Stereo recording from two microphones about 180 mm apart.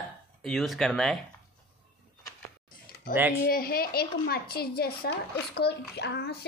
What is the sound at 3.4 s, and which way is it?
A woman's voice, 55° left (ahead or behind).